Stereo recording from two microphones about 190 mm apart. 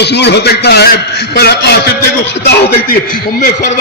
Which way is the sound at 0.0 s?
60° left (ahead or behind).